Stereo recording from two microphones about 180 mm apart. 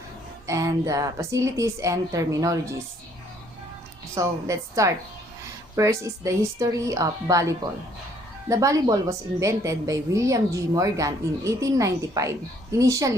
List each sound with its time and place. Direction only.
0.4 s a woman's voice: 20° right (ahead or behind)
4.1 s a woman's voice: 15° right (ahead or behind)